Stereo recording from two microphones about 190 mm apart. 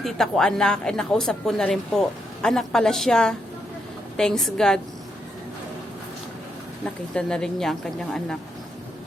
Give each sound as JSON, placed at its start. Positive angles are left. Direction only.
{"t": 0.0, "sound": "speech", "side_deg": 0}
{"t": 7.1, "sound": "speech", "side_deg": 5}